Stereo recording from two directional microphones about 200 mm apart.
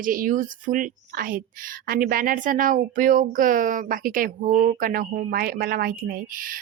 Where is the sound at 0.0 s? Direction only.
45° right (ahead or behind).